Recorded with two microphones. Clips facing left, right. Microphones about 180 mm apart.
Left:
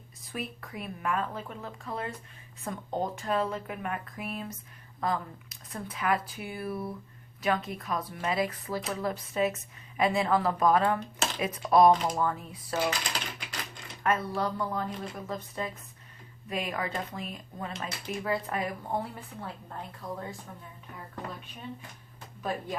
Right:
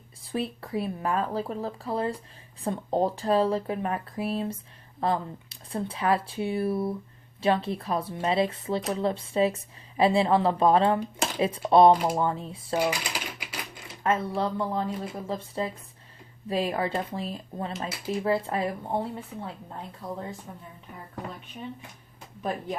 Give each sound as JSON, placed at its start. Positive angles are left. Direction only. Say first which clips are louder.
{"t": 0.2, "sound": "speech", "louder": "right 7 dB", "side_deg": -30}
{"t": 12.7, "sound": "typing", "louder": "right 3 dB", "side_deg": -10}
{"t": 14.0, "sound": "speech", "louder": "right 3 dB", "side_deg": -25}